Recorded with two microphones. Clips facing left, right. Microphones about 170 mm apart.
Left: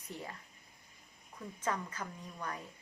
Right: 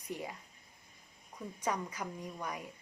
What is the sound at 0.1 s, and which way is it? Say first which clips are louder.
Speech: right 4 dB; 15° right (ahead or behind).